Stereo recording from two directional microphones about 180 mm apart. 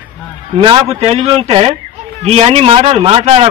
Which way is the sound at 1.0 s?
35° right (ahead or behind).